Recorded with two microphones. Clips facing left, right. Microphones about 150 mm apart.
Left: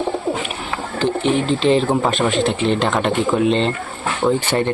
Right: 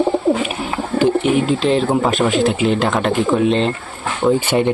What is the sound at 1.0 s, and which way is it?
Speech, 5° right (ahead or behind).